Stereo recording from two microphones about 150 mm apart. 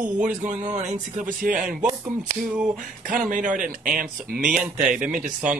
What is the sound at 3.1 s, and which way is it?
Speech, 60° right (ahead or behind).